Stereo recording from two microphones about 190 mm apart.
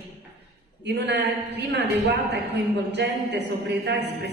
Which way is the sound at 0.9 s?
65° right (ahead or behind).